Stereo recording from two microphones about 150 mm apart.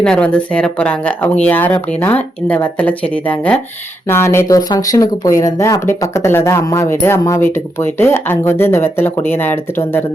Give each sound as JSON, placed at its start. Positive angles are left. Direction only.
{"t": 0.0, "sound": "speech", "side_deg": 5}